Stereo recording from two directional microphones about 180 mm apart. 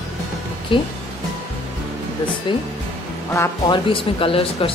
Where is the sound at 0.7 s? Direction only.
30° left (ahead or behind).